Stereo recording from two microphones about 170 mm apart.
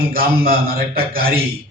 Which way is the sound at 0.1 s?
60° right (ahead or behind).